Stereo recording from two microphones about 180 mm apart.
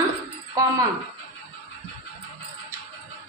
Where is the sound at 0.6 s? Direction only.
20° right (ahead or behind).